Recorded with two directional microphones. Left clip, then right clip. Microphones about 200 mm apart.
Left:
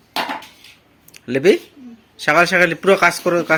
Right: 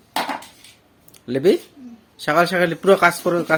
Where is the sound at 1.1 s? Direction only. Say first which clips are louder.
Left 3 dB; centre (ahead or behind).